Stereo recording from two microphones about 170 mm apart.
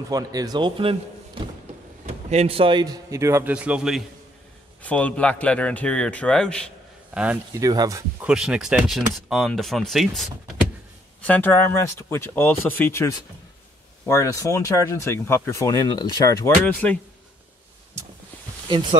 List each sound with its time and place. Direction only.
0.1 s speech: 20° right (ahead or behind)
2.0 s speech: 35° right (ahead or behind); by 4.0 s 5° right (ahead or behind)
4.8 s speech: 10° left (ahead or behind)
7.5 s speech: 20° right (ahead or behind)
8.2 s speech: 5° right (ahead or behind)
18.7 s speech: 30° right (ahead or behind)